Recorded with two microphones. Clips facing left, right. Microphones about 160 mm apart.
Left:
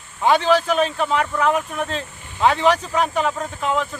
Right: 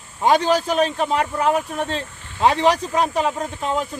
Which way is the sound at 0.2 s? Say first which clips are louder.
Even; 40° right (ahead or behind).